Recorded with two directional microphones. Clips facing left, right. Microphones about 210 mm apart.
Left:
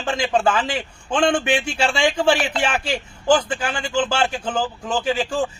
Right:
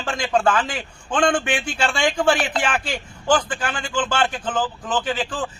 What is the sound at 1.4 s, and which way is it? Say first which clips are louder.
Speech: left 3 dB; 25° left (ahead or behind).